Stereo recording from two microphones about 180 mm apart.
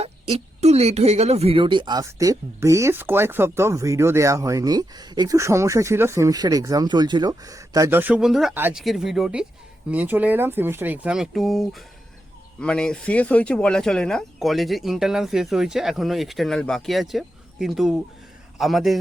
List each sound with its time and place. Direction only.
0.0 s speech: 35° right (ahead or behind); by 18.9 s centre (ahead or behind)